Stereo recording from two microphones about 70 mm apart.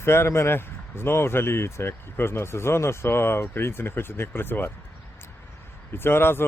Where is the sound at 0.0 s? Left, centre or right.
Left.